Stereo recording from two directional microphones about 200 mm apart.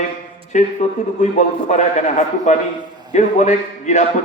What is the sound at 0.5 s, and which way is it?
A man's voice, 35° left (ahead or behind).